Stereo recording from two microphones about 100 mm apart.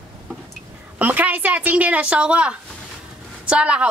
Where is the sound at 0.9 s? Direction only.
15° right (ahead or behind).